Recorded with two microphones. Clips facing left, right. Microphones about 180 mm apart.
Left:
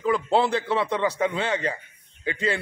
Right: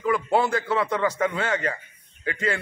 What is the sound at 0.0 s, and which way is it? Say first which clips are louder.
A man's voice: left 1 dB; 25° left (ahead or behind).